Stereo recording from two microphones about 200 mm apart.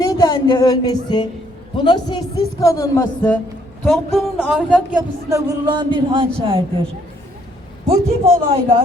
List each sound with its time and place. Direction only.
0.1 s a man's voice: 20° left (ahead or behind)
3.8 s speech: centre (ahead or behind)
5.3 s speech: 20° right (ahead or behind)
7.9 s speech: 30° right (ahead or behind)